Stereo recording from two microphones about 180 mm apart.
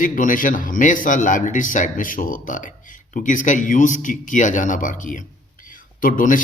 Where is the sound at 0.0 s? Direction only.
50° left (ahead or behind).